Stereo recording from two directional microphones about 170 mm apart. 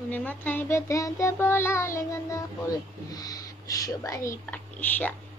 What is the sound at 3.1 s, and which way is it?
Speech, 20° left (ahead or behind).